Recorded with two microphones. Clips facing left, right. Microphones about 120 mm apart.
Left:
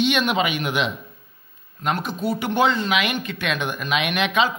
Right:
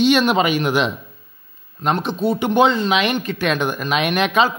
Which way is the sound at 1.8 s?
25° right (ahead or behind).